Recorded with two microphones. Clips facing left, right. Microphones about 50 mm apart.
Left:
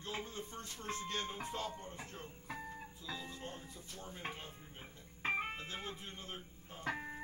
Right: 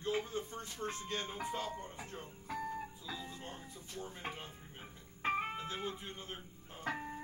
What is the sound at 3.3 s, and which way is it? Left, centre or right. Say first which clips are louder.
Music: even; centre.